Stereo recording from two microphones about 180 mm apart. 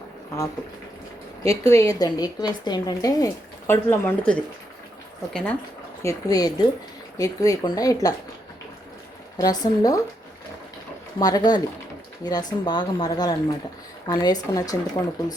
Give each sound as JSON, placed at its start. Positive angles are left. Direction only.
{"t": 1.5, "sound": "a woman's voice", "side_deg": 15}
{"t": 6.0, "sound": "a woman's voice", "side_deg": 20}
{"t": 9.4, "sound": "a woman's voice", "side_deg": 20}
{"t": 11.2, "sound": "a woman's voice", "side_deg": 20}